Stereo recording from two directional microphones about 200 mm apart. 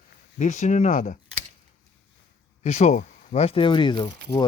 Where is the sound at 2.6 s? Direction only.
35° left (ahead or behind).